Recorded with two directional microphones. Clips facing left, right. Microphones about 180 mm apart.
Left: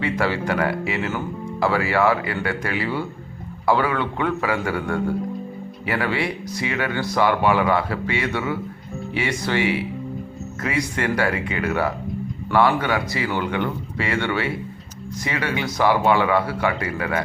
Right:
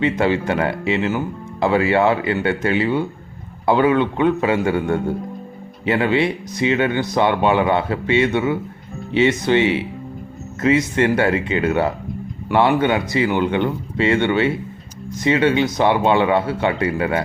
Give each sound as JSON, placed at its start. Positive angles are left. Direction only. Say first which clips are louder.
{"t": 0.0, "sound": "speech", "louder": "right 5 dB", "side_deg": -20}